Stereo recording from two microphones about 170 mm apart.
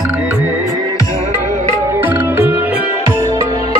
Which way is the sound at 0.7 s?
20° left (ahead or behind).